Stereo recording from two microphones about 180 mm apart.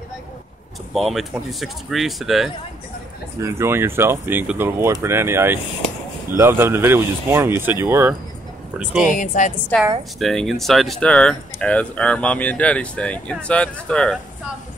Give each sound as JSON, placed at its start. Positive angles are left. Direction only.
{"t": 0.9, "sound": "speech", "side_deg": 0}
{"t": 3.3, "sound": "speech", "side_deg": -15}
{"t": 9.1, "sound": "a woman's voice", "side_deg": 45}
{"t": 9.7, "sound": "speech", "side_deg": 10}